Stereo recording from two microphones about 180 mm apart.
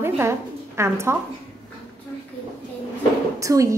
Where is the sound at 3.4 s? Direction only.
15° right (ahead or behind).